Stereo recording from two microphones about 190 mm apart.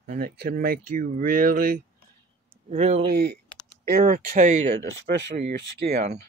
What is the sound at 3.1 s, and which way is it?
Speech, 60° right (ahead or behind).